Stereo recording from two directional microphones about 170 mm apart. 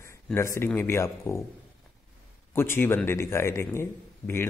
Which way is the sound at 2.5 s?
15° left (ahead or behind).